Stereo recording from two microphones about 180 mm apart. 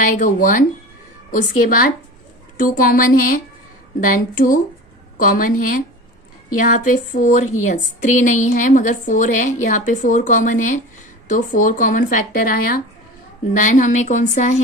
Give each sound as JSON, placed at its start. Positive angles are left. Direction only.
{"t": 0.0, "sound": "a woman's voice", "side_deg": 45}